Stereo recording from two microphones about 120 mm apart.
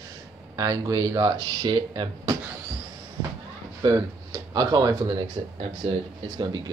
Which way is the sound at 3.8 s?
35° right (ahead or behind).